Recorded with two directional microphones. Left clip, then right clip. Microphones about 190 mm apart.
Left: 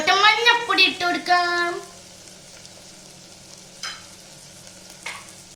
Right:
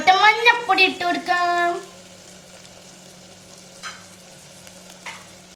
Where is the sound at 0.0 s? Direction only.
45° right (ahead or behind).